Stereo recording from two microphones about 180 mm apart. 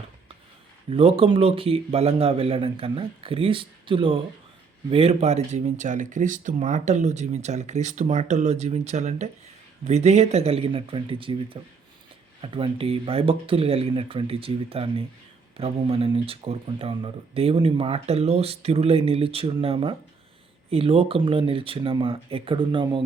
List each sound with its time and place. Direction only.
0.9 s speech: 30° right (ahead or behind)